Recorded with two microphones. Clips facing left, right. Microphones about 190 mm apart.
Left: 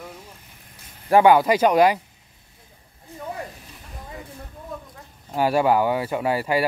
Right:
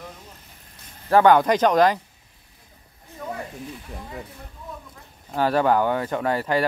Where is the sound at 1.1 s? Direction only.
10° left (ahead or behind).